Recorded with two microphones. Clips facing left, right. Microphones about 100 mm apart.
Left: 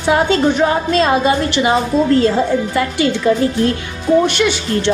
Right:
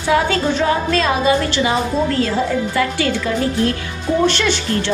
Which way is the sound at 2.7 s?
25° left (ahead or behind).